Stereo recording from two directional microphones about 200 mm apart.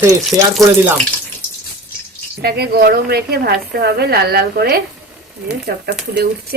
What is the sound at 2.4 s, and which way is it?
A woman's voice, 55° right (ahead or behind).